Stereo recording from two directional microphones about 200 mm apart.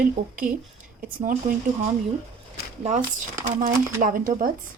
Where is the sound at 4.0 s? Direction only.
45° right (ahead or behind).